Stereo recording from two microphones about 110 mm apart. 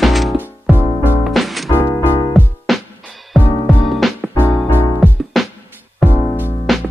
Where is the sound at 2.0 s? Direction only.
15° left (ahead or behind).